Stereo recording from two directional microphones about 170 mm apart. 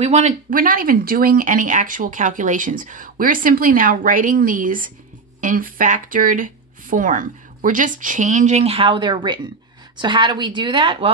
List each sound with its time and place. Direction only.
0.0 s speech: 45° right (ahead or behind)